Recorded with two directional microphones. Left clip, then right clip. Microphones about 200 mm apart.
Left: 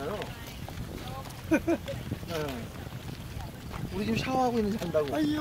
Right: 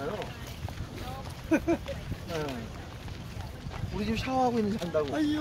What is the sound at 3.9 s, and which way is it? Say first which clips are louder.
Speech: even; 50° left (ahead or behind).